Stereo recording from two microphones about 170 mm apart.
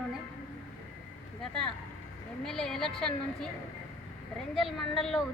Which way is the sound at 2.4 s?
5° left (ahead or behind).